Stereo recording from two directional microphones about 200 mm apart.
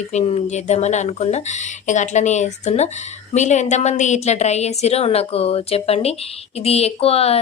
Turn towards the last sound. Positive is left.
turn(degrees=30)  # may be behind; listen again after turning